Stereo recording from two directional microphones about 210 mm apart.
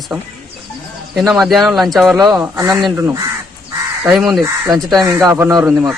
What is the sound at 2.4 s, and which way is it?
Speech, 15° right (ahead or behind).